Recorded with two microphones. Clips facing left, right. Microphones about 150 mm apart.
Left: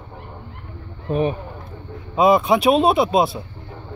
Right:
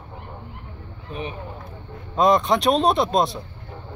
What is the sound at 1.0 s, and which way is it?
Speech, 55° left (ahead or behind).